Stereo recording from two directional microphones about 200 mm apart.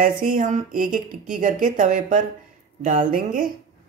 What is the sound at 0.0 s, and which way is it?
A woman's voice, 45° right (ahead or behind).